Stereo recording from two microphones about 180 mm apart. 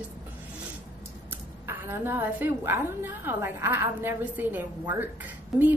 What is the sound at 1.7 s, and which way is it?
A woman's voice, 15° right (ahead or behind).